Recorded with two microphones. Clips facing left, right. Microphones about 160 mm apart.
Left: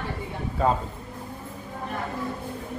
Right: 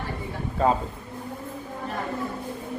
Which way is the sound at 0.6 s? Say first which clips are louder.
Right 1 dB; centre (ahead or behind).